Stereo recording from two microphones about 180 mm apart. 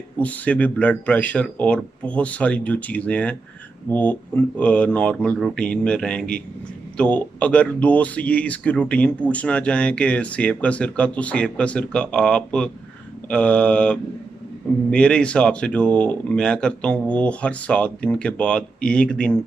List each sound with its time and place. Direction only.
0.2 s speech: 10° left (ahead or behind)